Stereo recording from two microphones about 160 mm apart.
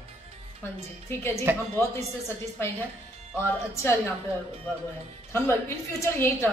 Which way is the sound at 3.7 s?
15° left (ahead or behind).